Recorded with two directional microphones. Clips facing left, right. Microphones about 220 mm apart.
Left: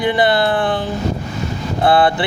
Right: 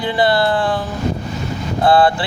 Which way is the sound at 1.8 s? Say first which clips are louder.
Right 1 dB; 20° left (ahead or behind).